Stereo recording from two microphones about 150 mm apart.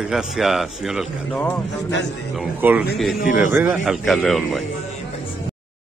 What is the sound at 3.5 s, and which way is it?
Speech, 15° right (ahead or behind).